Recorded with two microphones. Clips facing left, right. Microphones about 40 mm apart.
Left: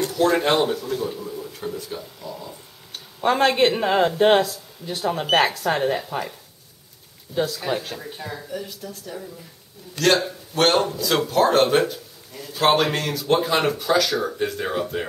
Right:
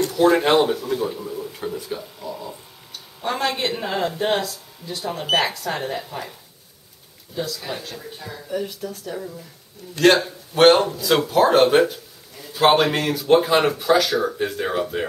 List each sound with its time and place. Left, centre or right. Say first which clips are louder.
0.2 s speech: right 3 dB; centre
3.3 s speech: left 5 dB; left; by 6.3 s centre
7.3 s speech: left 4 dB; left
7.9 s speech: left 2 dB; centre
8.5 s speech: right 5 dB; centre